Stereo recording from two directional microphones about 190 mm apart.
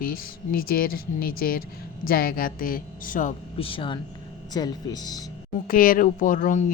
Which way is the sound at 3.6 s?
30° left (ahead or behind).